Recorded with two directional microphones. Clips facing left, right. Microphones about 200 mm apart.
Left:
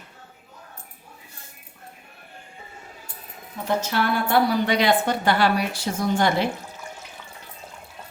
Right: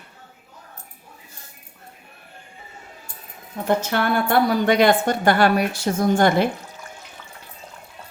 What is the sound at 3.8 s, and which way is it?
A woman's voice, 50° right (ahead or behind).